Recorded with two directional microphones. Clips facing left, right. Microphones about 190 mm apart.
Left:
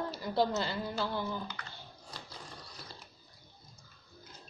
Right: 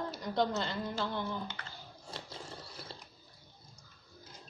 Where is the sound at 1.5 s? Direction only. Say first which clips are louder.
Even; 25° right (ahead or behind).